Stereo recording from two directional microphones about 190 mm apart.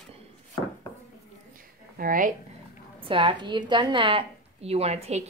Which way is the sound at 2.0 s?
45° right (ahead or behind).